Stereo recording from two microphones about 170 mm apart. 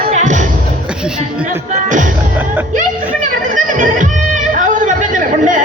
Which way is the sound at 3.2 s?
50° right (ahead or behind).